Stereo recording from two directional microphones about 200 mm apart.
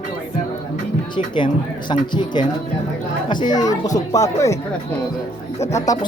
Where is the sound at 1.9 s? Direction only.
20° left (ahead or behind).